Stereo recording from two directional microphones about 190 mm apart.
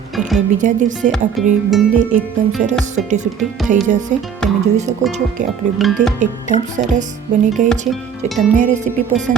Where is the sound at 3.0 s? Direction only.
40° right (ahead or behind).